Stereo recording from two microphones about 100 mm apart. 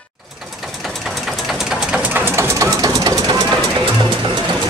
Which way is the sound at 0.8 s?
Centre (ahead or behind).